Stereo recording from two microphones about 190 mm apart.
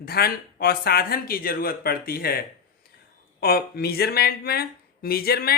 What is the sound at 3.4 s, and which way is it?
Speech, 55° left (ahead or behind).